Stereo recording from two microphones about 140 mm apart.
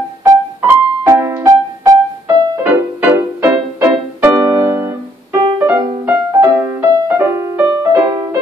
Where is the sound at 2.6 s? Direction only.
10° right (ahead or behind).